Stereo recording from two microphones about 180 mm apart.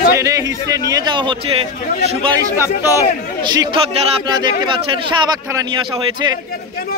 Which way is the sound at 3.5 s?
25° right (ahead or behind).